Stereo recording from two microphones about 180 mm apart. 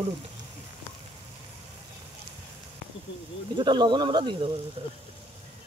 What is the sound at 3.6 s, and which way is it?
Speech, 25° right (ahead or behind).